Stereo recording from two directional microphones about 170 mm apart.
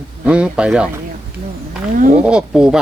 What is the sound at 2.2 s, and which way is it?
Speech, 5° right (ahead or behind).